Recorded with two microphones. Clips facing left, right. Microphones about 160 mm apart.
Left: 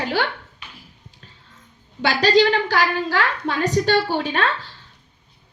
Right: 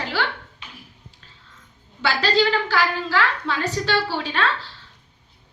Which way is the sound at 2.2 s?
45° left (ahead or behind).